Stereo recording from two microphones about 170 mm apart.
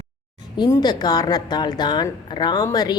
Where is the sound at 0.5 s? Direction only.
25° left (ahead or behind).